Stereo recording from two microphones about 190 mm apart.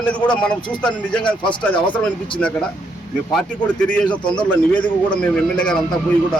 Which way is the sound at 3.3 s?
5° left (ahead or behind).